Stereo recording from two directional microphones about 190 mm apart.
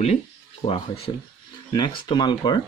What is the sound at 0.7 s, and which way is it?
Speech, 30° left (ahead or behind).